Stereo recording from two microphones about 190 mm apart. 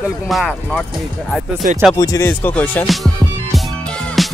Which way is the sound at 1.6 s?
45° right (ahead or behind).